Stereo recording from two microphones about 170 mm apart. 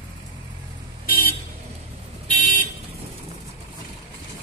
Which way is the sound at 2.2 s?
50° left (ahead or behind).